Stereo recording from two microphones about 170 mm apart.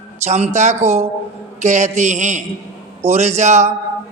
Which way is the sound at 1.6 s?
45° right (ahead or behind).